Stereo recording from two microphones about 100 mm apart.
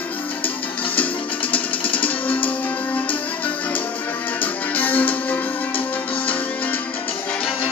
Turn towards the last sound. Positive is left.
turn(degrees=20)  # may be behind; listen again after turning